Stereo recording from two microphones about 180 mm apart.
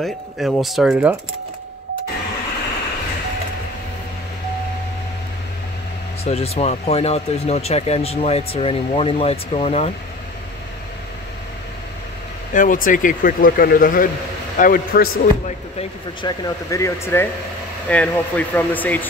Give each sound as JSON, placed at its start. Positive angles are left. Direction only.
{"t": 0.0, "sound": "speech", "side_deg": 0}
{"t": 6.2, "sound": "speech", "side_deg": 35}
{"t": 12.5, "sound": "speech", "side_deg": 50}
{"t": 15.8, "sound": "speech", "side_deg": 25}